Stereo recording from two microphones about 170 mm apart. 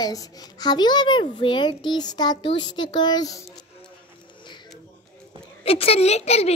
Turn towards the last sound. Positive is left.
turn(degrees=40)  # may be behind; listen again after turning